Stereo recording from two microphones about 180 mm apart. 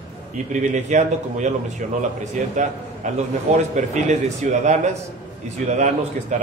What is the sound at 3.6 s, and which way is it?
A man's voice, 40° right (ahead or behind).